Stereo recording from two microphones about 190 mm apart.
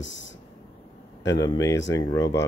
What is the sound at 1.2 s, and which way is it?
Mantra, 20° left (ahead or behind).